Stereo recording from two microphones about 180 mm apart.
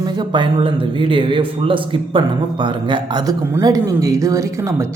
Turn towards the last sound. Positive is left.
turn(degrees=-15)  # may be behind; listen again after turning